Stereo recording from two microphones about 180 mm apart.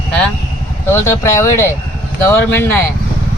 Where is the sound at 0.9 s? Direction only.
15° left (ahead or behind).